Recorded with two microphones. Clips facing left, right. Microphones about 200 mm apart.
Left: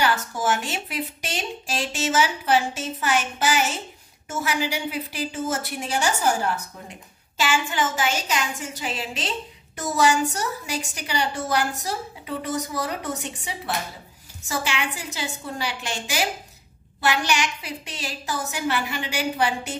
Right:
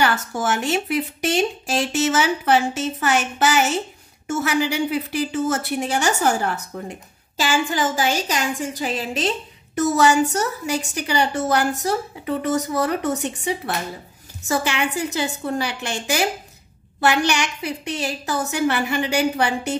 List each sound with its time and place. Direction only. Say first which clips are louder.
0.0 s a woman's voice: right 2 dB; 65° right (ahead or behind)
6.9 s a woman's voice: right 8 dB; 35° right (ahead or behind)
9.8 s a woman's voice: right 5 dB; 60° right (ahead or behind)